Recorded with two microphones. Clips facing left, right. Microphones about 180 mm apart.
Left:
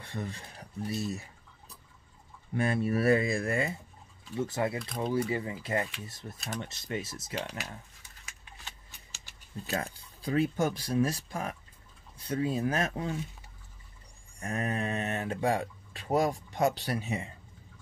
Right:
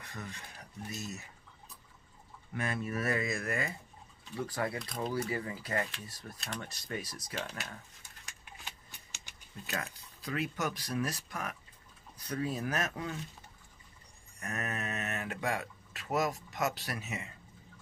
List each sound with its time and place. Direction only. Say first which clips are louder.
0.0 s speech: left 7 dB; 30° left (ahead or behind)
2.5 s speech: left 7 dB; 35° left (ahead or behind)
4.7 s speech: left 3 dB; centre (ahead or behind)
5.1 s speech: left 6 dB; 25° left (ahead or behind)
6.3 s speech: left 4 dB; centre (ahead or behind)
6.6 s speech: left 5 dB; 25° left (ahead or behind)
8.3 s a sound: even; centre (ahead or behind)
9.7 s speech: left 5 dB; 35° left (ahead or behind)
14.4 s speech: left 6 dB; 30° left (ahead or behind)